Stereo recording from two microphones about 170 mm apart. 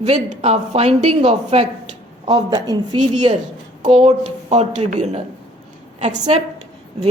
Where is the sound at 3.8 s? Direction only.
35° right (ahead or behind).